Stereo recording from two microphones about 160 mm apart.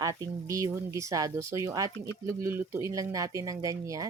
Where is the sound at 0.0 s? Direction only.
20° right (ahead or behind).